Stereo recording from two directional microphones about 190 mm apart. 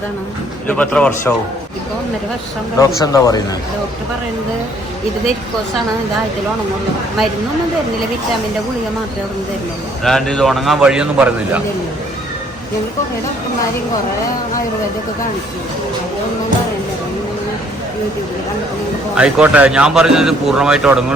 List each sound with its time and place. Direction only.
0.7 s a man's voice: 5° left (ahead or behind)
2.7 s speech: 20° left (ahead or behind)
10.0 s a man's voice: centre (ahead or behind)
19.1 s a man's voice: 5° right (ahead or behind)